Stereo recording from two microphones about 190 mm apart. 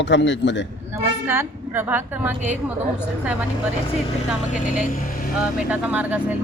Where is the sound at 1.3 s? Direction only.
10° right (ahead or behind).